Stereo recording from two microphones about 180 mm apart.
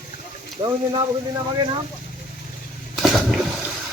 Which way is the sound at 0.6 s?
25° right (ahead or behind).